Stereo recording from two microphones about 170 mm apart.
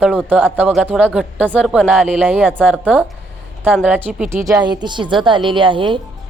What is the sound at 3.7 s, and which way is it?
A woman's voice, 10° right (ahead or behind).